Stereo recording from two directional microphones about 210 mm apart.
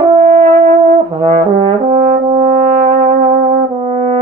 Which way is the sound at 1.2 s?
25° right (ahead or behind).